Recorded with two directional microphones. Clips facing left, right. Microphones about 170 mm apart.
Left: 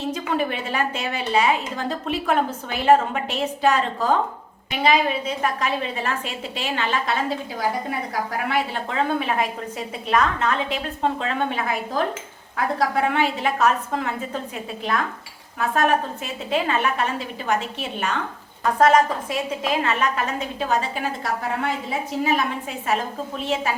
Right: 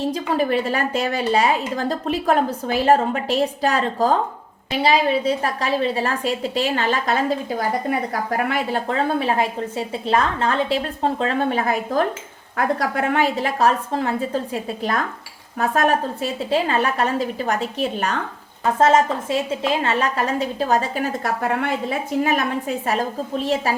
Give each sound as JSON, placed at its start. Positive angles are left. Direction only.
{"t": 0.1, "sound": "a woman's voice", "side_deg": -40}
{"t": 18.6, "sound": "a woman's voice", "side_deg": -25}
{"t": 21.4, "sound": "a woman's voice", "side_deg": -60}